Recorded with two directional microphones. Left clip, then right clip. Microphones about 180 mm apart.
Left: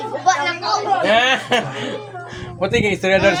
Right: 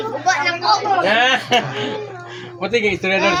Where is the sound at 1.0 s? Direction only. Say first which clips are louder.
Even; 35° left (ahead or behind).